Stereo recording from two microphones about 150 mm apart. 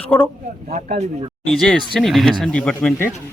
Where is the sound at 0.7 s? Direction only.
50° right (ahead or behind).